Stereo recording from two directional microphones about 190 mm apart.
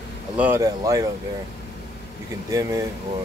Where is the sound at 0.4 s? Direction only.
15° right (ahead or behind).